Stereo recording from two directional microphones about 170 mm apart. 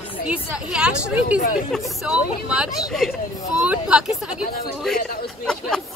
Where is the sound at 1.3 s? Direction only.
50° left (ahead or behind).